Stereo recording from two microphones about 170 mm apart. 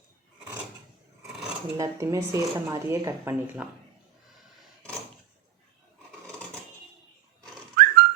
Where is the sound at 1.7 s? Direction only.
20° right (ahead or behind).